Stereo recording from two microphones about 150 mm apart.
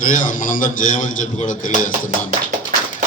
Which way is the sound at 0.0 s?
60° left (ahead or behind).